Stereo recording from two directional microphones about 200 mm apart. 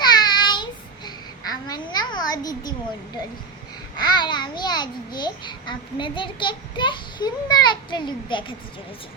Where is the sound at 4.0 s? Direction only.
20° left (ahead or behind).